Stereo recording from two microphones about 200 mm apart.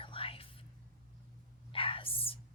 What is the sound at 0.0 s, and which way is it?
Whispering, 25° left (ahead or behind).